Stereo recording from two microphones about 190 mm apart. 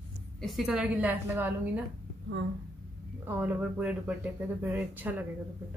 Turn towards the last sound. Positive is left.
turn(degrees=-10)  # may be behind; listen again after turning